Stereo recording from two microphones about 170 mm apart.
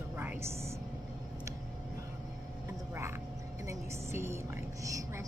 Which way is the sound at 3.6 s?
15° right (ahead or behind).